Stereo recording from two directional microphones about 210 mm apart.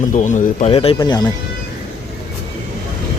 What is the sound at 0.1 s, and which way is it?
A man's voice, 35° left (ahead or behind).